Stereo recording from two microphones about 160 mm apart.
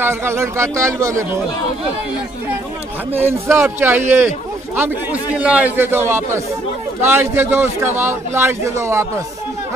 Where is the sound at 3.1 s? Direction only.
15° right (ahead or behind).